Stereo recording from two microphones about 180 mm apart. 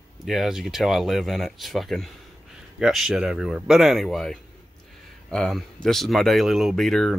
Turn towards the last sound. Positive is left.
turn(degrees=0)  # may be behind; listen again after turning